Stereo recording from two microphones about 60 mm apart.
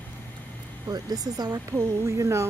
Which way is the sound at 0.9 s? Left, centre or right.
Right.